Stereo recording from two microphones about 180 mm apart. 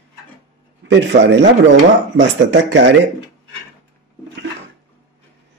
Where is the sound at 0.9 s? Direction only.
80° right.